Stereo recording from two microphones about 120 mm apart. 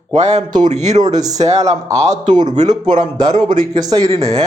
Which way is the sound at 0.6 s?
80° right.